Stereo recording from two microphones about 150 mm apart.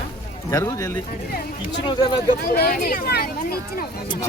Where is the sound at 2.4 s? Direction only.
90° left.